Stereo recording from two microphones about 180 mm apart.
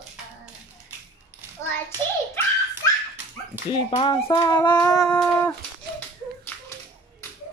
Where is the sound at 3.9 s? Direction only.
30° left (ahead or behind).